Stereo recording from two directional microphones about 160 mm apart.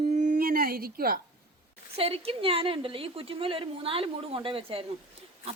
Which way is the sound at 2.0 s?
35° right (ahead or behind).